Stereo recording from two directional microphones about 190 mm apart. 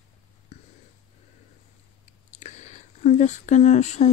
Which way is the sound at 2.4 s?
35° left (ahead or behind).